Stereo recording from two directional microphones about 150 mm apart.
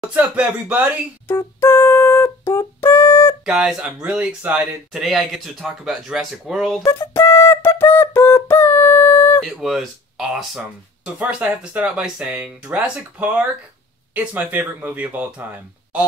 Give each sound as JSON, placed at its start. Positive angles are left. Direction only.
{"t": 0.1, "sound": "speech", "side_deg": -10}
{"t": 1.2, "sound": "music", "side_deg": 15}
{"t": 3.4, "sound": "speech", "side_deg": -5}
{"t": 6.8, "sound": "a sound", "side_deg": 15}
{"t": 9.4, "sound": "speech", "side_deg": 0}